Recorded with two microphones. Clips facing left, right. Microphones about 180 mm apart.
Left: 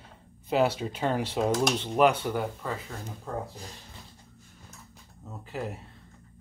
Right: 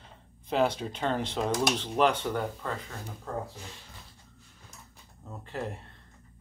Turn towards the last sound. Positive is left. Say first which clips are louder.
# left 1 dB
turn(degrees=5)  # may be behind; listen again after turning